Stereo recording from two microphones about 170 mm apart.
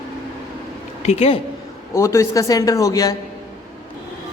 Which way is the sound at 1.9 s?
15° left (ahead or behind).